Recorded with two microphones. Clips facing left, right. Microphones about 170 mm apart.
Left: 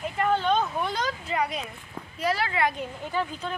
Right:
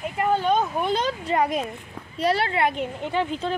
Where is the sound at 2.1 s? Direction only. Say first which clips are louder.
Right 4 dB; 30° right (ahead or behind).